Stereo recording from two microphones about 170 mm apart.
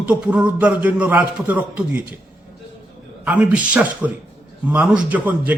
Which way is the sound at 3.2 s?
10° right (ahead or behind).